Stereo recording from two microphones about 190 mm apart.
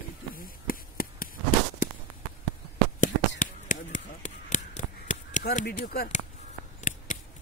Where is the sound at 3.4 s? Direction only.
40° left (ahead or behind).